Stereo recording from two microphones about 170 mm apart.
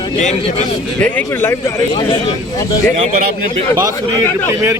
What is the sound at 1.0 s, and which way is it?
Speech, 10° left (ahead or behind).